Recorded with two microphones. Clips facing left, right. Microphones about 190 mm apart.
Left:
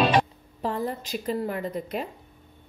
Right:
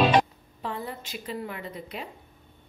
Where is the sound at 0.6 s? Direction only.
40° left (ahead or behind).